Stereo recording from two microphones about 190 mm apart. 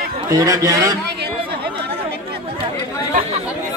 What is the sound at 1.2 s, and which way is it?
Chatter, 60° right (ahead or behind).